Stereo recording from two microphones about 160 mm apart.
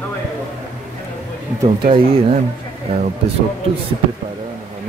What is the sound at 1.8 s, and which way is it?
Speech, 30° right (ahead or behind).